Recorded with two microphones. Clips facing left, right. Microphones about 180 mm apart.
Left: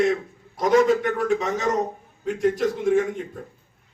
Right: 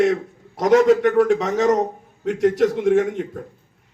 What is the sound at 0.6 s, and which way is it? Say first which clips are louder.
A man's voice: right 4 dB; 80° right.